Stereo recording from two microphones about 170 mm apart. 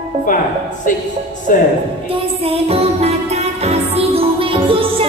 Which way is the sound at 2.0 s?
35° right (ahead or behind).